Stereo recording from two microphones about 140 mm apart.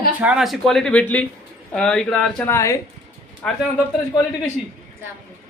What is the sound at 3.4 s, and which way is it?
Speech, 10° left (ahead or behind).